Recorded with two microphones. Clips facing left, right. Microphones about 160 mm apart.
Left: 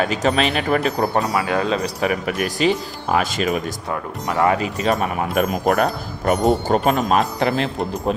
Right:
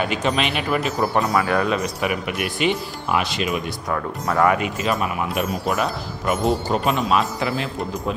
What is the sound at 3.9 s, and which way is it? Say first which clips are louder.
A man's voice: right 2 dB; 25° left (ahead or behind).